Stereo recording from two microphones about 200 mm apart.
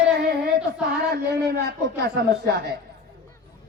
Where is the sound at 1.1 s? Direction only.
55° right (ahead or behind).